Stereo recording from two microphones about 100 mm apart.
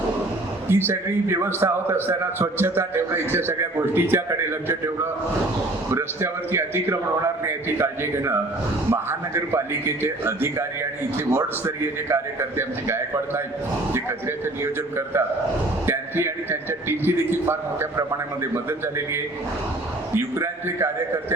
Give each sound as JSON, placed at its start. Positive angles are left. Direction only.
{"t": 0.7, "sound": "a man's voice", "side_deg": -20}
{"t": 5.9, "sound": "a man's voice", "side_deg": -25}